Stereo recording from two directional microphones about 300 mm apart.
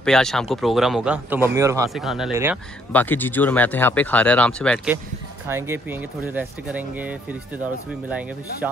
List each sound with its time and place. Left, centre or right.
0.0 s speech: centre
2.9 s speech: centre
5.5 s speech: centre